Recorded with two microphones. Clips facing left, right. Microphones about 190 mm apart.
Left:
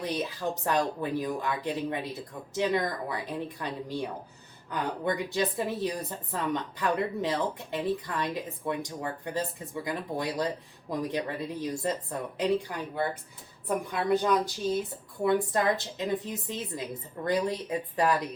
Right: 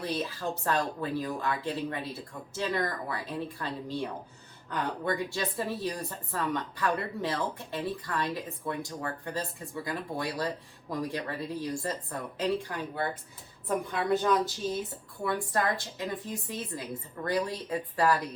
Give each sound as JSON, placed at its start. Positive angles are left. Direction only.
{"t": 0.0, "sound": "speech", "side_deg": 15}